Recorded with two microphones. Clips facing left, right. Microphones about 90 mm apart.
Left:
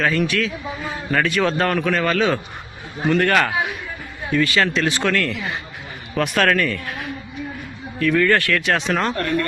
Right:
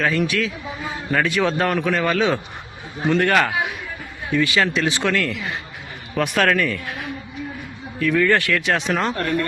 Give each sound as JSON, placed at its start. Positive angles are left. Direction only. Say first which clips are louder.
{"t": 0.0, "sound": "a man's voice", "louder": "left 1 dB", "side_deg": -10}
{"t": 6.1, "sound": "a man's voice", "louder": "even", "side_deg": -5}
{"t": 7.9, "sound": "a man's voice", "louder": "left 1 dB", "side_deg": -5}